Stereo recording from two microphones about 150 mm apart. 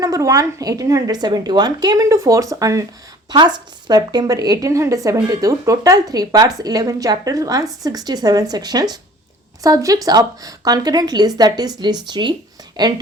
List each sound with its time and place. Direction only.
0.0 s a woman's voice: 20° right (ahead or behind)